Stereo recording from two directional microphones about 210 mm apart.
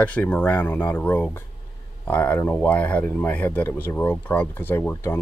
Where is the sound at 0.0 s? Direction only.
5° left (ahead or behind).